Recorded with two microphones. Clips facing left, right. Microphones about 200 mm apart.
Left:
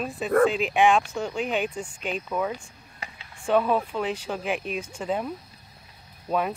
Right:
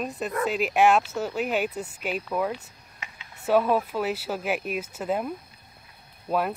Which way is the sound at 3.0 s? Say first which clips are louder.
Left 3 dB; 35° left (ahead or behind).